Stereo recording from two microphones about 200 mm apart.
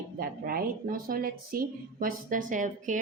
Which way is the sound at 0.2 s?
45° right (ahead or behind).